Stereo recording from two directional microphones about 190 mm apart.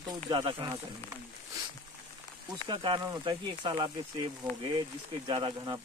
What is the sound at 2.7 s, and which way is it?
Speech, 25° right (ahead or behind).